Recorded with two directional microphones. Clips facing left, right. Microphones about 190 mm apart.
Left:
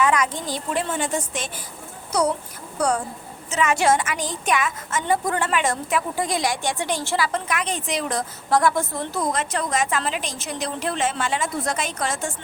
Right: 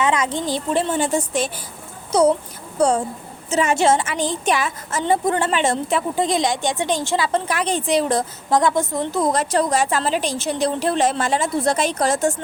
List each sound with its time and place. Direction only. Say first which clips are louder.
0.0 s a woman's voice: right 1 dB; 25° right (ahead or behind)
7.3 s a woman's voice: right 5 dB; 30° right (ahead or behind)
9.3 s a woman's voice: right 6 dB; 35° right (ahead or behind)